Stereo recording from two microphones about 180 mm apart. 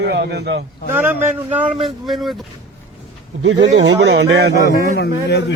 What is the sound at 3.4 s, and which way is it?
A man's voice, 85° right.